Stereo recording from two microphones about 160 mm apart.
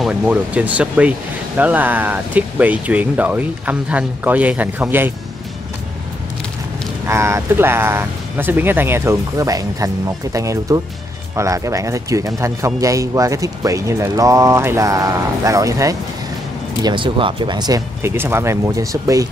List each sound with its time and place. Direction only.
0.0 s speech: 5° right (ahead or behind)
7.1 s a man's voice: 15° right (ahead or behind)
16.8 s a man's voice: 30° right (ahead or behind)